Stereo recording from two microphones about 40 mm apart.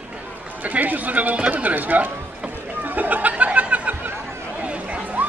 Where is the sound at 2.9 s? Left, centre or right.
Right.